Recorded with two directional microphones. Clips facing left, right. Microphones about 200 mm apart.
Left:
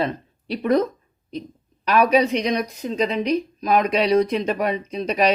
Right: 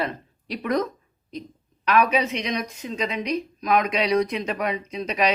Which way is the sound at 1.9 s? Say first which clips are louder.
Left 4 dB; 35° left (ahead or behind).